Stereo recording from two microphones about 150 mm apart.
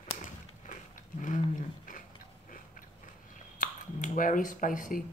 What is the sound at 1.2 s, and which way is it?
Dog, 60° left (ahead or behind).